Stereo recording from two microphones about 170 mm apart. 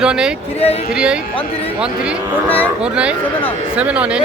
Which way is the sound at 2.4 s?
10° left (ahead or behind).